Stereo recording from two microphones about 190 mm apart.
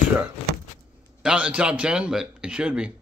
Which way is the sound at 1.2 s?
5° right (ahead or behind).